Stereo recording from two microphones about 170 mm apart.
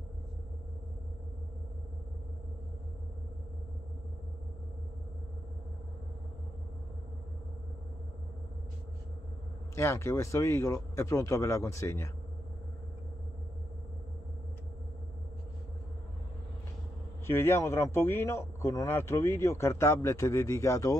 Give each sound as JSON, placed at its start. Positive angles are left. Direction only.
{"t": 9.8, "sound": "speech", "side_deg": 15}
{"t": 17.3, "sound": "speech", "side_deg": 15}